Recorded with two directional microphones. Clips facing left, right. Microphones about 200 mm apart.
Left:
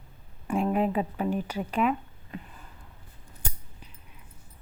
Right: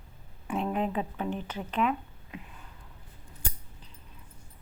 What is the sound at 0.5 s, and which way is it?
Speech, 5° left (ahead or behind).